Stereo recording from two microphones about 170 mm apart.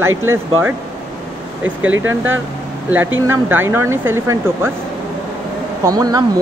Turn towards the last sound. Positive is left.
turn(degrees=-20)  # may be behind; listen again after turning